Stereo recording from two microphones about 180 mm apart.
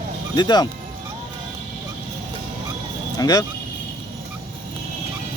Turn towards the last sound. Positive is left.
turn(degrees=20)  # may be behind; listen again after turning